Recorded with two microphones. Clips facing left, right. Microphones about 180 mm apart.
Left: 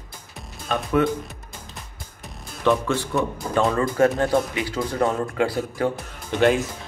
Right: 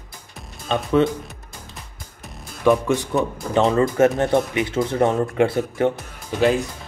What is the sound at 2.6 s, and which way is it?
Speech, 15° right (ahead or behind).